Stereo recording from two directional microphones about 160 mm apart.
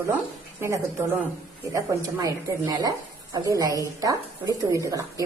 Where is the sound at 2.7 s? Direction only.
25° right (ahead or behind).